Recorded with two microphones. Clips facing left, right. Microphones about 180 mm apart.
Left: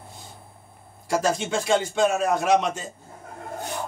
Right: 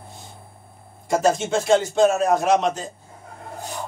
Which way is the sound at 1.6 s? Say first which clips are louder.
Right 5 dB; centre (ahead or behind).